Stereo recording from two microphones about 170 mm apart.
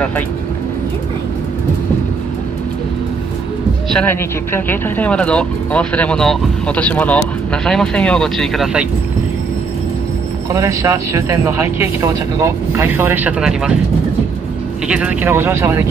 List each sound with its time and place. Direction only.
3.9 s speech: 10° left (ahead or behind)
10.5 s speech: 20° right (ahead or behind)
14.9 s speech: 5° right (ahead or behind)